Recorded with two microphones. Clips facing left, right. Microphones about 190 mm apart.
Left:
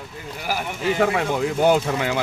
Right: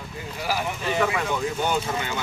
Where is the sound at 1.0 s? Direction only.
55° left (ahead or behind).